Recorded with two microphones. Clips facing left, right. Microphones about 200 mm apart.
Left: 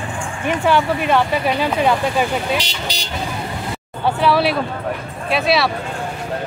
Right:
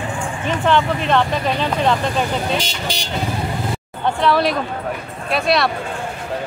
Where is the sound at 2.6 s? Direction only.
50° right (ahead or behind).